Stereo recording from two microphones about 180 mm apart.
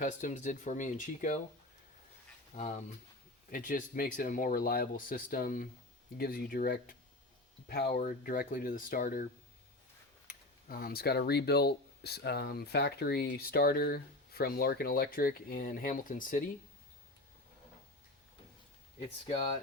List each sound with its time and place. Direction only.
0.0 s speech: 45° left (ahead or behind)
2.6 s speech: 40° left (ahead or behind); by 7.9 s 60° left (ahead or behind)
7.9 s speech: 50° left (ahead or behind)
10.7 s speech: 55° left (ahead or behind)
18.9 s speech: 35° left (ahead or behind)